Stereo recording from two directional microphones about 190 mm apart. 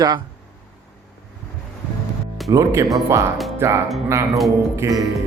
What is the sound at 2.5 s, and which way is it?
Speech, 20° right (ahead or behind).